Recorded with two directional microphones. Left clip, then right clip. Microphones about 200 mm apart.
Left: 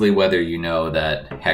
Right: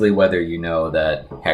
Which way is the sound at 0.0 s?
35° right (ahead or behind).